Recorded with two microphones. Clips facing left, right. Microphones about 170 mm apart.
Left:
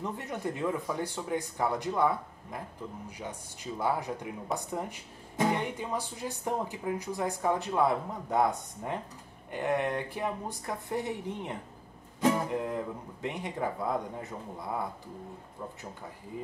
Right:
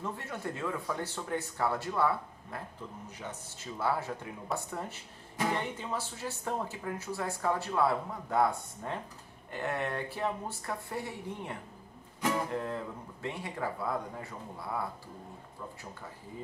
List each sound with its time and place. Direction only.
0.0 s speech: 15° left (ahead or behind)